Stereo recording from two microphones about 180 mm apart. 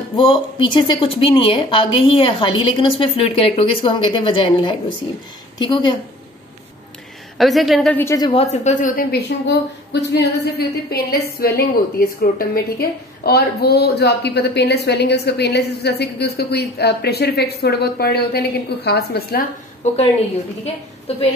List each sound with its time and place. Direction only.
0.1 s a woman's voice: 25° left (ahead or behind)
7.3 s a woman's voice: centre (ahead or behind)
7.9 s a woman's voice: 15° left (ahead or behind)
8.3 s a woman's voice: 35° left (ahead or behind); by 19.4 s 60° left (ahead or behind)
21.1 s a woman's voice: 35° left (ahead or behind)